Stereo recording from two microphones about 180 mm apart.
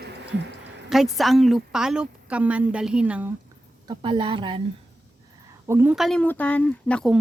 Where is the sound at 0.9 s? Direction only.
Centre (ahead or behind).